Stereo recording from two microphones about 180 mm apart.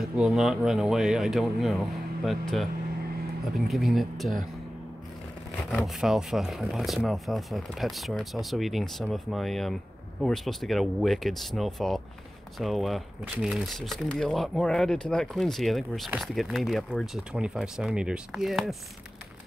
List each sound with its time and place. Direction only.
0.0 s speech: centre (ahead or behind)
5.7 s speech: centre (ahead or behind)